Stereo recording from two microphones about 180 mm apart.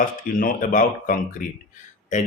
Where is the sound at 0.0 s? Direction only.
50° left (ahead or behind).